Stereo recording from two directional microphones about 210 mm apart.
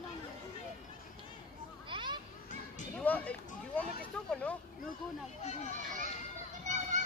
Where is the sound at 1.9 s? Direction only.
25° right (ahead or behind).